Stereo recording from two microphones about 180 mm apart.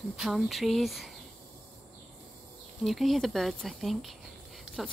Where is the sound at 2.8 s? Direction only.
Centre (ahead or behind).